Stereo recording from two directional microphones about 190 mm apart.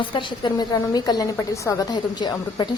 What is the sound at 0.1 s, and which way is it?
A woman's voice, 25° left (ahead or behind).